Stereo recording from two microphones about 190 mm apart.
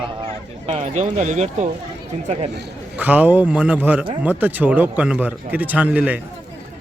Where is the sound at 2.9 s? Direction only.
10° right (ahead or behind).